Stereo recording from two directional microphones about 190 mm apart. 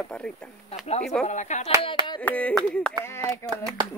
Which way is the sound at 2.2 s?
10° left (ahead or behind).